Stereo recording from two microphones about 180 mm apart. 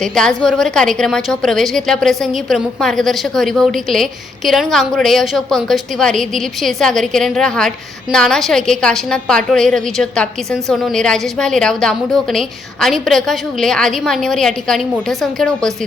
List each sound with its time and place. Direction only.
0.0 s a woman's voice: 5° left (ahead or behind)